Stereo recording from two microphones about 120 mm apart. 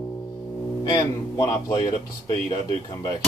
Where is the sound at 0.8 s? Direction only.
30° left (ahead or behind).